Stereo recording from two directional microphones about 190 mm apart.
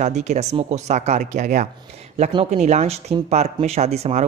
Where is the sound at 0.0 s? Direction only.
35° right (ahead or behind).